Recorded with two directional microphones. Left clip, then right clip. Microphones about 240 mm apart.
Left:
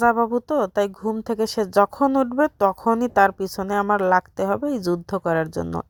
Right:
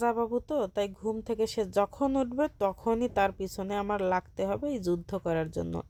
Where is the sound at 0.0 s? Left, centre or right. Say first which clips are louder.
Left 10 dB; left.